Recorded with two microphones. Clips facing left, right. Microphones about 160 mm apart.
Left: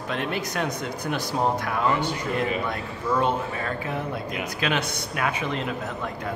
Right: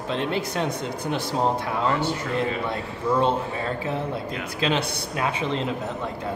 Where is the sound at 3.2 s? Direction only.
25° right (ahead or behind).